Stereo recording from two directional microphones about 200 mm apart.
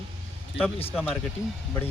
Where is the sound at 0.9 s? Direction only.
Centre (ahead or behind).